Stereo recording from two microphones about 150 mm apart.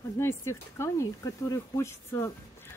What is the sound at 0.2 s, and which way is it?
A woman's voice, 15° left (ahead or behind).